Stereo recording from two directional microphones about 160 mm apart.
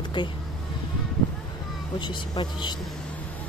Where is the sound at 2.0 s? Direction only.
30° left (ahead or behind).